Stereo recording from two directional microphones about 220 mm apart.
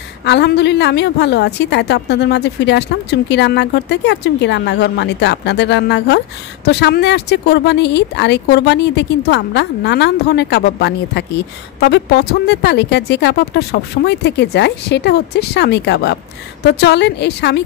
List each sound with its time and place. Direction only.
0.2 s a woman's voice: 50° left (ahead or behind)